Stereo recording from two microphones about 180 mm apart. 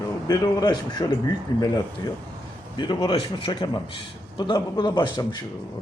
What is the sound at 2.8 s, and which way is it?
Speech, 25° left (ahead or behind).